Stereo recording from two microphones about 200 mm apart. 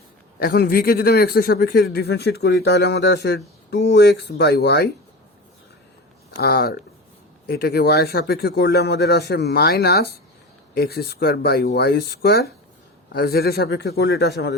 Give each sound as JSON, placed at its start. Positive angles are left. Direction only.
{"t": 0.3, "sound": "a man's voice", "side_deg": 50}
{"t": 6.4, "sound": "speech", "side_deg": 50}